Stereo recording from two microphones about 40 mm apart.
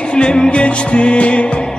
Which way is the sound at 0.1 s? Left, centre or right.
Left.